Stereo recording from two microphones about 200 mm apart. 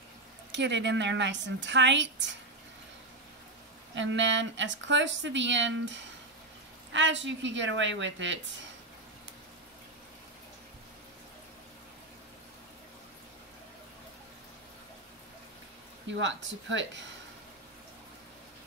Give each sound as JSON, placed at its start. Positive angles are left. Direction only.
{"t": 0.5, "sound": "speech", "side_deg": -60}
{"t": 3.9, "sound": "speech", "side_deg": -65}
{"t": 16.1, "sound": "speech", "side_deg": -65}